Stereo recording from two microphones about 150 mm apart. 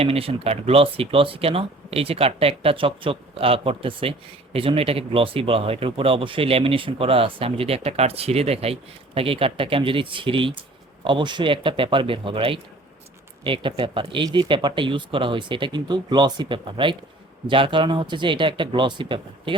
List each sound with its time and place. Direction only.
0.0 s speech: 40° right (ahead or behind)